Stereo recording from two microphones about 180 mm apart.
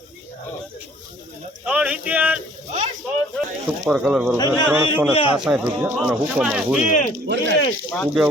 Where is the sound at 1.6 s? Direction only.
5° right (ahead or behind).